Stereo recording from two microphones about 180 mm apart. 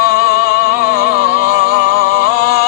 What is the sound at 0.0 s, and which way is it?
Music, 55° left (ahead or behind).